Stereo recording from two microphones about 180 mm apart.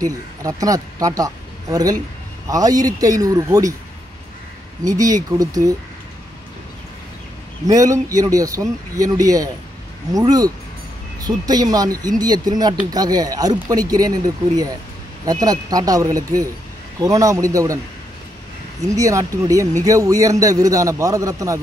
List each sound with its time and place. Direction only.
0.0 s a man's voice: 20° right (ahead or behind)
4.8 s a man's voice: 20° right (ahead or behind)
7.6 s a man's voice: 20° right (ahead or behind)
18.8 s a man's voice: 20° right (ahead or behind)